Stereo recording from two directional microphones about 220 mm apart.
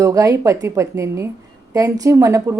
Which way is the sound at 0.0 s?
15° right (ahead or behind).